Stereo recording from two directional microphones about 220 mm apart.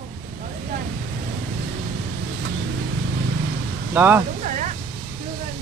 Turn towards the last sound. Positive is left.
turn(degrees=-35)  # may be behind; listen again after turning